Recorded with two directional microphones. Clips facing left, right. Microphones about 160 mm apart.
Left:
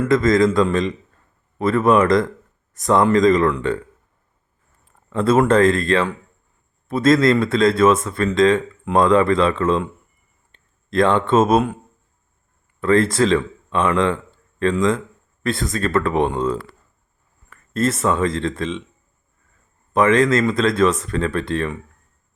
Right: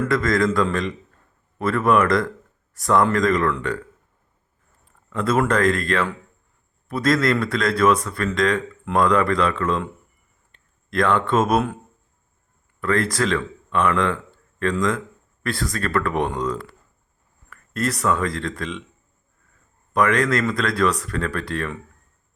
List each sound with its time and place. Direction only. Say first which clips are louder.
0.0 s a man's voice: left 5 dB; 20° left (ahead or behind)
5.0 s a man's voice: left 5 dB; 30° left (ahead or behind)
12.8 s a man's voice: left 5 dB; 25° left (ahead or behind)
19.9 s a man's voice: left 4 dB; 25° left (ahead or behind)